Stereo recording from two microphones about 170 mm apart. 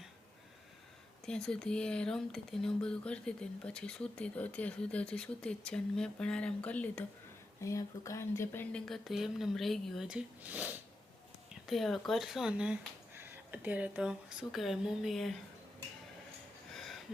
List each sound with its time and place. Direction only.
1.2 s speech: 5° left (ahead or behind)
8.9 s speech: centre (ahead or behind)
11.6 s speech: centre (ahead or behind)
16.7 s a sound: centre (ahead or behind)